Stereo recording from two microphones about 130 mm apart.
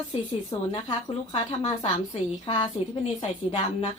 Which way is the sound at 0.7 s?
45° left (ahead or behind).